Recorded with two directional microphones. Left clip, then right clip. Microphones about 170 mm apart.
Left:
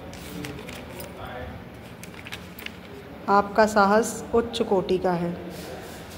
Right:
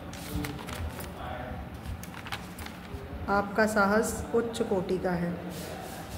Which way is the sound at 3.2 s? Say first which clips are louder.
Left 7 dB; 20° left (ahead or behind).